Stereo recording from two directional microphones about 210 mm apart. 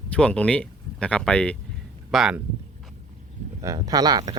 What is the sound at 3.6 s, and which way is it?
Speech, 15° right (ahead or behind).